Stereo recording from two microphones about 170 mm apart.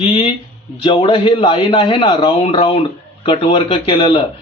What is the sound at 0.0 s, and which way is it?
A man's voice, 35° left (ahead or behind).